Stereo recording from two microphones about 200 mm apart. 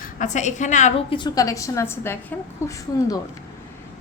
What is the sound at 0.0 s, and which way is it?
A woman's voice, 40° left (ahead or behind).